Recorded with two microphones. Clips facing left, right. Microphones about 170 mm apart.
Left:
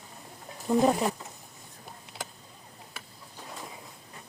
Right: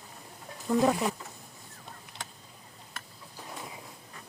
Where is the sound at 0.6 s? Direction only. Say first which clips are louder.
Left 2 dB; 20° left (ahead or behind).